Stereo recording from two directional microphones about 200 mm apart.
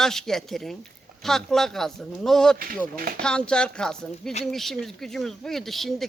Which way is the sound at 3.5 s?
5° left (ahead or behind).